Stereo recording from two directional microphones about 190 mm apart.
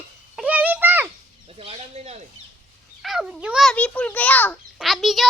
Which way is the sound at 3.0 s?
Centre (ahead or behind).